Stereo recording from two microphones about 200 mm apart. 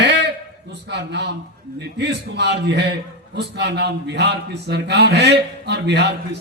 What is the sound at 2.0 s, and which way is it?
A man's voice, 60° right (ahead or behind).